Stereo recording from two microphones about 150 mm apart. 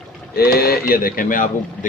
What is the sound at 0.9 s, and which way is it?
Speech, 75° left (ahead or behind).